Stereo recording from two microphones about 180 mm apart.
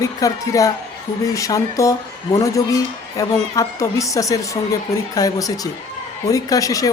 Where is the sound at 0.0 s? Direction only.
20° left (ahead or behind).